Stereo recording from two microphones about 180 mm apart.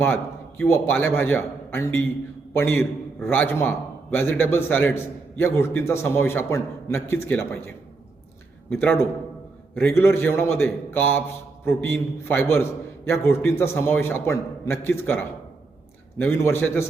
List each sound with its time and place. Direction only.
0.0 s a man's voice: 10° left (ahead or behind)
8.7 s a man's voice: 10° left (ahead or behind)
13.1 s a man's voice: 15° left (ahead or behind)